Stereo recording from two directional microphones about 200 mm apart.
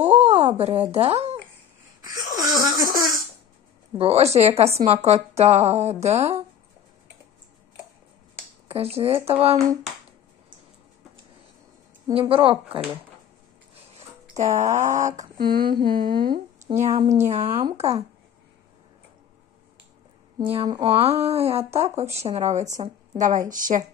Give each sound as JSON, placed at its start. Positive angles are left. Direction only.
{"t": 0.2, "sound": "a woman's voice", "side_deg": -30}
{"t": 2.0, "sound": "a sound", "side_deg": -20}
{"t": 4.0, "sound": "speech", "side_deg": -30}
{"t": 8.6, "sound": "speech", "side_deg": -30}
{"t": 12.1, "sound": "speech", "side_deg": -25}
{"t": 14.3, "sound": "speech", "side_deg": -35}
{"t": 16.6, "sound": "speech", "side_deg": -30}
{"t": 20.3, "sound": "speech", "side_deg": -20}
{"t": 20.8, "sound": "speech", "side_deg": -30}